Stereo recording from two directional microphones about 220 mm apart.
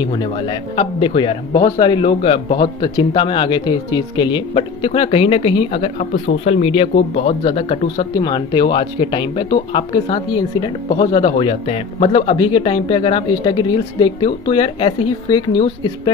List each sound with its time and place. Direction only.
0.0 s speech: 20° left (ahead or behind)